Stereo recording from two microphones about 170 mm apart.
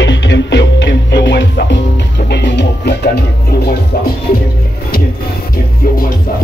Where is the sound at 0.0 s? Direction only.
90° left.